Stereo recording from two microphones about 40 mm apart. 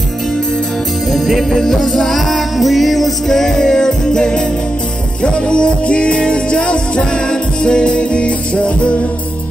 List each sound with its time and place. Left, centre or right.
1.1 s music: centre; by 8.9 s left